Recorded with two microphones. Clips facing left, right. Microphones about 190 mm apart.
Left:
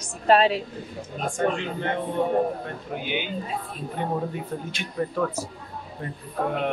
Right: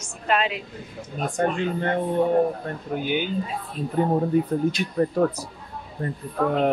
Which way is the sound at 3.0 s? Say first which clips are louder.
Right 5 dB; 45° right (ahead or behind).